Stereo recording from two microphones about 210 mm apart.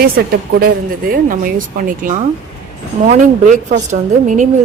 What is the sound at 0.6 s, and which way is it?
A woman's voice, 40° right (ahead or behind).